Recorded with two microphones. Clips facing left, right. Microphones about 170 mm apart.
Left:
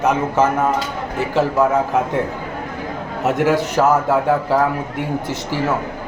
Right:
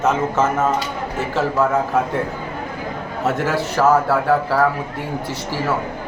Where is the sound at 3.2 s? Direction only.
15° left (ahead or behind).